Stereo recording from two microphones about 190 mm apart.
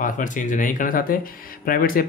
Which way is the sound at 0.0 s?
45° left (ahead or behind).